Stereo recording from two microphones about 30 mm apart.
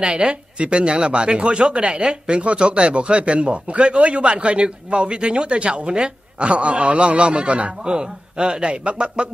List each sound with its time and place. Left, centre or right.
0.0 s a man's voice: right
7.8 s a man's voice: right